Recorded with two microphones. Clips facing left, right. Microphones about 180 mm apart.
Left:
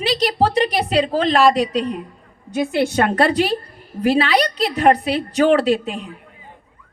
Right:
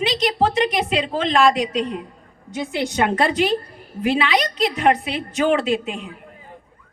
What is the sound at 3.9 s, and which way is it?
A woman's voice, 40° left (ahead or behind).